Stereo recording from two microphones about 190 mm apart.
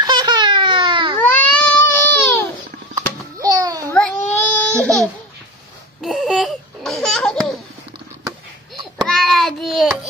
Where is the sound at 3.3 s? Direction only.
20° right (ahead or behind).